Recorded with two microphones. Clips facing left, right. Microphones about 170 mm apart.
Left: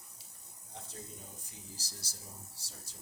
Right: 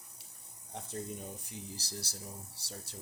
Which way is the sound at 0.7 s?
60° right (ahead or behind).